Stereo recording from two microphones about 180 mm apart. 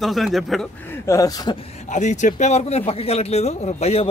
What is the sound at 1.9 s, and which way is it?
A man's voice, 40° left (ahead or behind).